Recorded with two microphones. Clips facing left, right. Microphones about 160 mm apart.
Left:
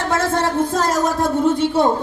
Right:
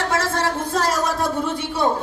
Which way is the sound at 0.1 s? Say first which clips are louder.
Left 3 dB; 50° left (ahead or behind).